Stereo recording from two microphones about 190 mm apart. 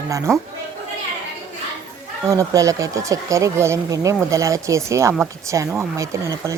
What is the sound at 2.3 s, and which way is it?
Speech, 15° right (ahead or behind).